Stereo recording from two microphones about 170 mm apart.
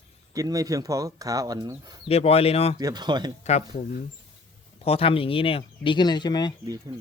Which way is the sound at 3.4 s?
40° left (ahead or behind).